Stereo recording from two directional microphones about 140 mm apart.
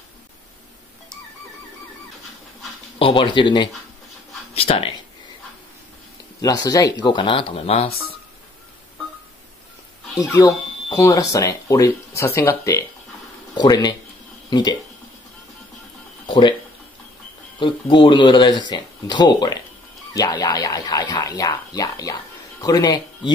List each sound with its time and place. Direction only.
3.0 s speech: 40° left (ahead or behind)
6.4 s speech: 25° left (ahead or behind); by 7.9 s 45° left (ahead or behind)
10.1 s speech: 25° left (ahead or behind)
13.6 s speech: 30° left (ahead or behind)
16.3 s music: 35° left (ahead or behind)
17.6 s speech: 35° left (ahead or behind)